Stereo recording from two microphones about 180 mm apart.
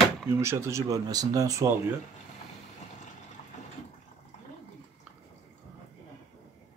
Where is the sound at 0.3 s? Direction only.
15° right (ahead or behind).